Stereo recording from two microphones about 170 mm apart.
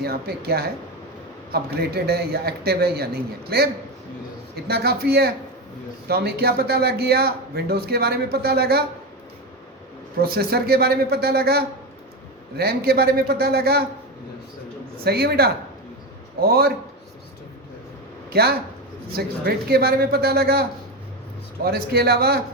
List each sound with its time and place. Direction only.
0.0 s a man's voice: 65° right (ahead or behind)
10.2 s a man's voice: 65° right (ahead or behind)
14.9 s a man's voice: 65° right (ahead or behind)
18.3 s a man's voice: 65° right (ahead or behind)